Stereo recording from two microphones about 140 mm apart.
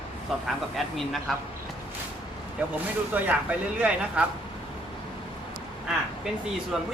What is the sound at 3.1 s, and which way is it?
Speech, 10° right (ahead or behind).